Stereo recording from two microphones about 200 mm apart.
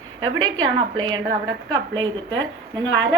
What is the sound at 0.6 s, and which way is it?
Speech, 20° right (ahead or behind).